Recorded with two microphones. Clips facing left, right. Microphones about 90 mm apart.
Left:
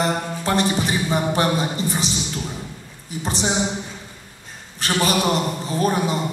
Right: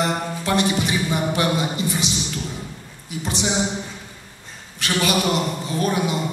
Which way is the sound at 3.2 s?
35° left (ahead or behind).